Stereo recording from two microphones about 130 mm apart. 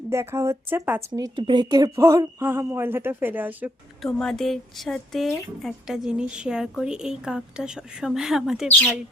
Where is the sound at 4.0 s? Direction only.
5° left (ahead or behind).